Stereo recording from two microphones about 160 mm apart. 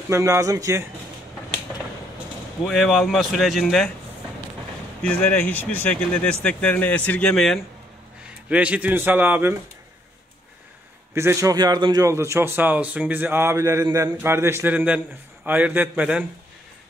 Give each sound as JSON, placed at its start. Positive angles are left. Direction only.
{"t": 0.1, "sound": "speech", "side_deg": -20}
{"t": 2.6, "sound": "speech", "side_deg": 0}
{"t": 5.0, "sound": "speech", "side_deg": 10}
{"t": 8.5, "sound": "a man's voice", "side_deg": -10}
{"t": 11.1, "sound": "a man's voice", "side_deg": -20}